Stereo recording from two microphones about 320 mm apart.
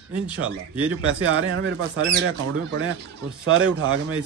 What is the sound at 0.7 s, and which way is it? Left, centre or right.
Speech, centre.